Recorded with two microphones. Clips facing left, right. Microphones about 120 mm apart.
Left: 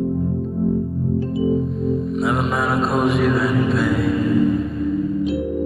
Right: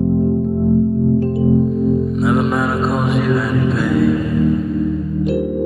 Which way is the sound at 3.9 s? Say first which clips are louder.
Right 3 dB; centre (ahead or behind).